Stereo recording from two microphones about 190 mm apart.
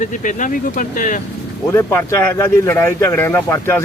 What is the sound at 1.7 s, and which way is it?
Speech, 15° left (ahead or behind).